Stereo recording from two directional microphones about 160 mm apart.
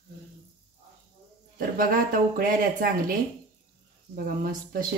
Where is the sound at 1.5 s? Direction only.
65° right (ahead or behind).